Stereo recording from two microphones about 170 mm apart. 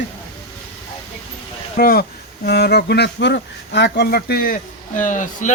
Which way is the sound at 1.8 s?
65° left (ahead or behind).